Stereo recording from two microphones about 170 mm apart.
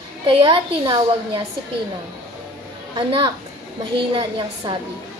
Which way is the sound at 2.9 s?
30° right (ahead or behind).